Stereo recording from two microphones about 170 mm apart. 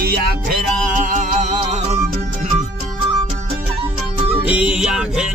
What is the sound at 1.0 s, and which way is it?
Music, 50° right (ahead or behind).